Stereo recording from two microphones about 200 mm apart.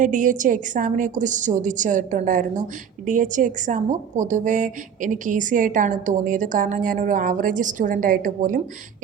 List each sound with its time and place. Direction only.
0.0 s a woman's voice: 40° right (ahead or behind)